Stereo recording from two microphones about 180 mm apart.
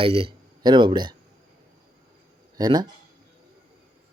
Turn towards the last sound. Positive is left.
turn(degrees=-20)  # may be behind; listen again after turning